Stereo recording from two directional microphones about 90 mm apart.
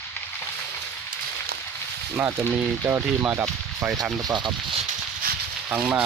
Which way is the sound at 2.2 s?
20° right (ahead or behind).